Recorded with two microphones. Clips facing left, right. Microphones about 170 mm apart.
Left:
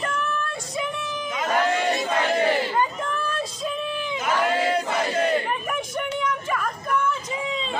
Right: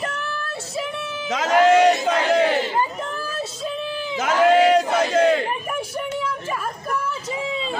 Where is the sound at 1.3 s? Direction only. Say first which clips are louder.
Right 8 dB; 90° right.